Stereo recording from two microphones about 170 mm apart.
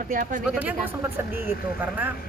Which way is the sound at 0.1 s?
55° right (ahead or behind).